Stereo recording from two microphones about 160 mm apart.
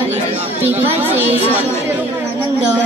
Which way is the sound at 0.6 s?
10° right (ahead or behind).